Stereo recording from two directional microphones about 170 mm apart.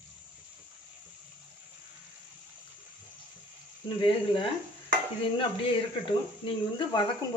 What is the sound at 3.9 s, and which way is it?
Speech, 30° left (ahead or behind).